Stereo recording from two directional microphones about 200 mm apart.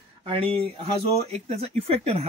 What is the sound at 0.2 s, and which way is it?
Speech, 30° right (ahead or behind).